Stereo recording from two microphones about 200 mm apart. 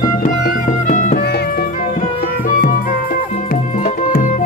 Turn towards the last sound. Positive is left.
turn(degrees=45)  # may be behind; listen again after turning